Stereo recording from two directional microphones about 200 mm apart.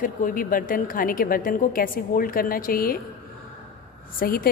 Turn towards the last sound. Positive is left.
turn(degrees=45)  # may be behind; listen again after turning